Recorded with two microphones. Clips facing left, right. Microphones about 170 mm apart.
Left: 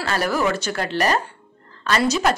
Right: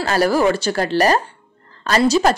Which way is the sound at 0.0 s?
35° right (ahead or behind).